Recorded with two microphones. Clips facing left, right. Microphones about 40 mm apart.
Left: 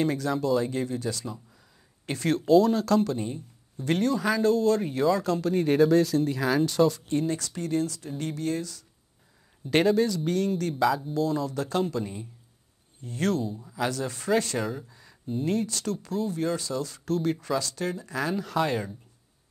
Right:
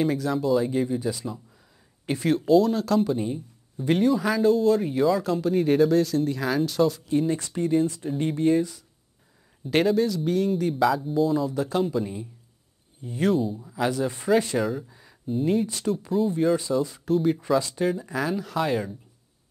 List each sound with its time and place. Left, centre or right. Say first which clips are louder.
0.0 s speech: right 2 dB; centre; by 8.8 s right
9.7 s speech: right 1 dB; centre
13.8 s speech: right 4 dB; centre
14.6 s speech: right 5 dB; centre
14.9 s a sound: right 1 dB; centre
15.2 s speech: right 4 dB; centre
17.6 s speech: right 5 dB; centre
17.8 s speech: right 4 dB; centre